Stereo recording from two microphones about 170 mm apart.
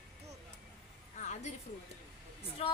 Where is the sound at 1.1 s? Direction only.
45° left (ahead or behind).